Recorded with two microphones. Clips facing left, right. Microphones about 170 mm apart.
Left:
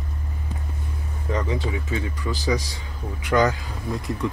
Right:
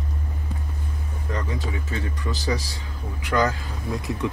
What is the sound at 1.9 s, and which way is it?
Speech, 15° left (ahead or behind).